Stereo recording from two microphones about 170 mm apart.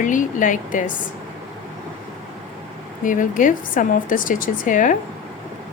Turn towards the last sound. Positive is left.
turn(degrees=50)  # may be behind; listen again after turning